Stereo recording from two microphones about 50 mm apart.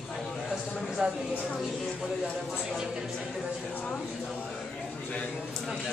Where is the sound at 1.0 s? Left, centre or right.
Centre.